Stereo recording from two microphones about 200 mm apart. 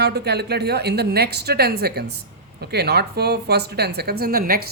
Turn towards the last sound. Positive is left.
turn(degrees=-50)  # may be behind; listen again after turning